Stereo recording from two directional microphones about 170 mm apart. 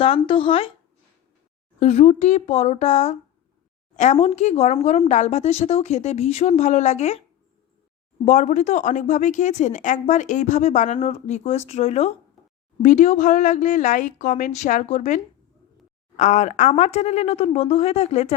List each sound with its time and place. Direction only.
0.0 s speech: 35° left (ahead or behind)
1.8 s speech: 40° left (ahead or behind)
8.2 s speech: 45° left (ahead or behind)